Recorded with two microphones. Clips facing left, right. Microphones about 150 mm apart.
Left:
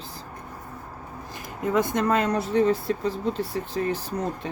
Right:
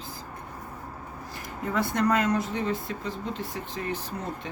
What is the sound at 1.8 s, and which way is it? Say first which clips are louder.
Speech: left 2 dB; 20° left (ahead or behind).